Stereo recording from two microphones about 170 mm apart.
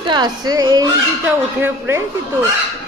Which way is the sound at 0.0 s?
25° right (ahead or behind).